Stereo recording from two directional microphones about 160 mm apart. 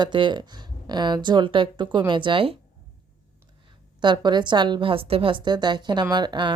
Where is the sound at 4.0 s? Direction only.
30° right (ahead or behind).